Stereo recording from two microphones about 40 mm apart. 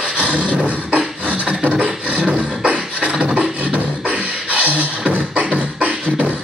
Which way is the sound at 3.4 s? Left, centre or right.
Right.